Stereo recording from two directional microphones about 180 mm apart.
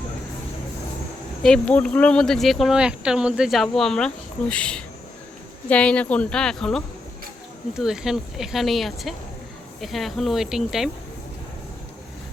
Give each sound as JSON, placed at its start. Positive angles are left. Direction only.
{"t": 1.4, "sound": "speech", "side_deg": 5}